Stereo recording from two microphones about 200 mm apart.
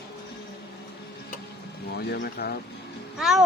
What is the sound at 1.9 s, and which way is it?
Speech, 55° left (ahead or behind).